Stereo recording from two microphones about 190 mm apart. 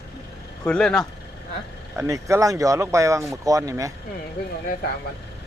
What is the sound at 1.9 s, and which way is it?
Speech, 15° right (ahead or behind).